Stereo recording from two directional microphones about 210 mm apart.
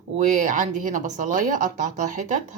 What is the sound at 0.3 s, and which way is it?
Speech, 35° right (ahead or behind).